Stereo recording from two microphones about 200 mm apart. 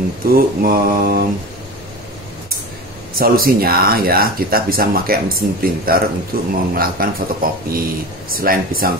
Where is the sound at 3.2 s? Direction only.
45° right (ahead or behind).